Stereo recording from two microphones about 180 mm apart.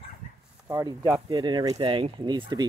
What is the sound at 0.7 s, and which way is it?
Speech, 15° right (ahead or behind).